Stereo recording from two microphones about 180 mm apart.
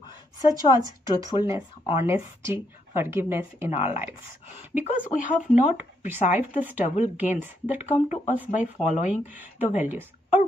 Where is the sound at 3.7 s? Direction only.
35° left (ahead or behind).